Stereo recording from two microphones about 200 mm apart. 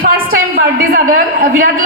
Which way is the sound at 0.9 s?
45° right (ahead or behind).